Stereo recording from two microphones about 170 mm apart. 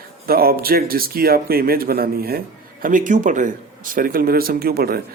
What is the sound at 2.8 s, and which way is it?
Speech, 50° right (ahead or behind).